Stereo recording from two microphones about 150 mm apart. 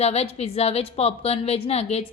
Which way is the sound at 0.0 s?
45° left (ahead or behind).